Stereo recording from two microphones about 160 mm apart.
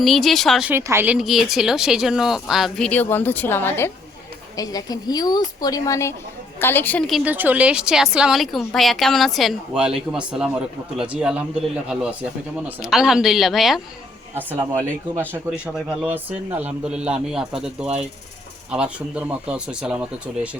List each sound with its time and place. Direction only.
0.0 s speech: centre (ahead or behind)
0.7 s a woman's voice: 15° right (ahead or behind); by 7.0 s 10° left (ahead or behind)
7.1 s speech: 10° right (ahead or behind)
14.5 s speech: 20° right (ahead or behind)